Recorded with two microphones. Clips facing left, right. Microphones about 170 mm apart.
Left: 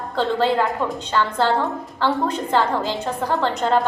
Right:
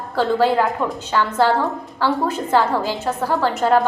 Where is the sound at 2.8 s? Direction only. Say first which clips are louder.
Right 1 dB; 20° left (ahead or behind).